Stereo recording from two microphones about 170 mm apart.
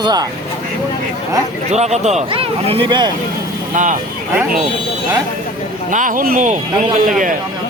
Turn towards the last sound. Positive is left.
turn(degrees=-50)  # may be behind; listen again after turning